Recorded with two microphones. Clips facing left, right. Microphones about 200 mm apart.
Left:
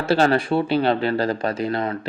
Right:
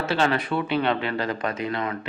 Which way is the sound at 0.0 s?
35° left (ahead or behind).